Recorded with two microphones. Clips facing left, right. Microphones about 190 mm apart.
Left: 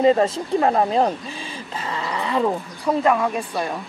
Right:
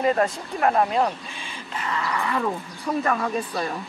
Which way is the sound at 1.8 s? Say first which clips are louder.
Even; 30° left (ahead or behind).